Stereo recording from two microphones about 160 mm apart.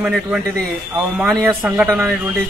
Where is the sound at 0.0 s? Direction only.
10° right (ahead or behind).